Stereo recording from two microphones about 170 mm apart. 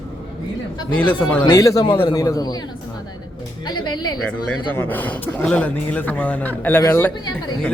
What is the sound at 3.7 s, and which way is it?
Speech, 25° left (ahead or behind).